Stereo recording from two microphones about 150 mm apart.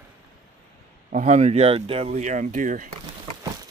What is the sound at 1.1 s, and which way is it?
Speech, 55° right (ahead or behind).